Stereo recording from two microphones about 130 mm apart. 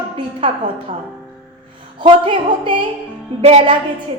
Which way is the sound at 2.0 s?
40° right (ahead or behind).